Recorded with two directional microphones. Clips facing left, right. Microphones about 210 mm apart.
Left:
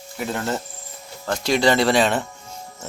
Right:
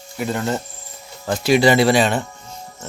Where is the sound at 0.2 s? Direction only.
Centre (ahead or behind).